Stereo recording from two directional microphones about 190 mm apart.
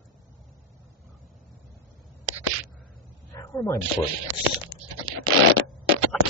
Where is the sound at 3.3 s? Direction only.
15° left (ahead or behind).